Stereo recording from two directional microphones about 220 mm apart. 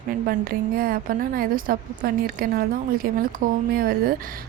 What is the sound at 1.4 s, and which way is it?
A woman's voice, 40° right (ahead or behind).